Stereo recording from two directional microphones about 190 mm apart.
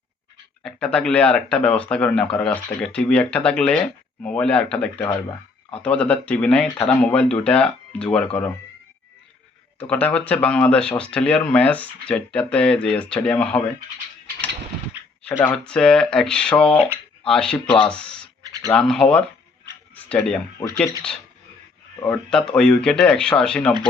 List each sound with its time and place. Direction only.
0.6 s speech: 5° left (ahead or behind)
9.7 s speech: 5° left (ahead or behind)
15.3 s speech: 10° left (ahead or behind)
19.9 s tick-tock: 5° left (ahead or behind)
20.6 s speech: 20° left (ahead or behind)
22.0 s speech: 10° left (ahead or behind)